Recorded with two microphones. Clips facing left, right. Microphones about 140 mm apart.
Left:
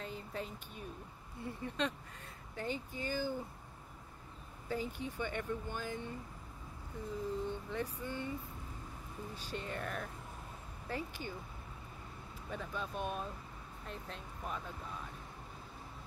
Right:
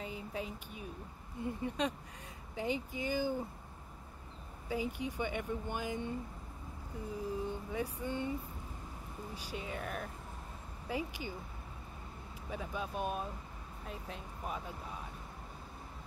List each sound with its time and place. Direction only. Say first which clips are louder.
0.0 s a sound: right 2 dB; 10° right (ahead or behind)
1.4 s speech: right 3 dB; 10° right (ahead or behind)
4.6 s speech: right 2 dB; 10° right (ahead or behind)
7.4 s speech: right 1 dB; 10° right (ahead or behind)
9.3 s speech: even; 10° right (ahead or behind)
12.4 s speech: right 2 dB; 10° right (ahead or behind)